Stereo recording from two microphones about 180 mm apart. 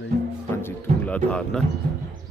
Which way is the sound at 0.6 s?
10° left (ahead or behind).